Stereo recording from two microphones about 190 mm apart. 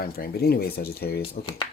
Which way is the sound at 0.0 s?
55° left (ahead or behind).